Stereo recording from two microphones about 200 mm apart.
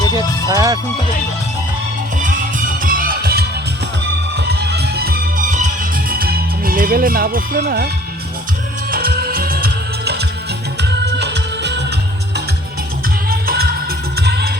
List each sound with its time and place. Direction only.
0.1 s speech: 20° right (ahead or behind)
2.8 s music: 45° right (ahead or behind)
8.9 s music: 50° right (ahead or behind)
13.3 s music: 50° right (ahead or behind)